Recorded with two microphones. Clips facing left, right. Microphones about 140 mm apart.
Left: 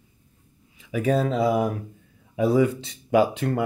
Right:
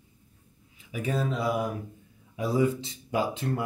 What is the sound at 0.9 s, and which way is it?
Speech, 90° left.